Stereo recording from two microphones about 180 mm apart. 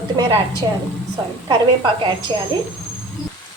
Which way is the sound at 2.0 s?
25° right (ahead or behind).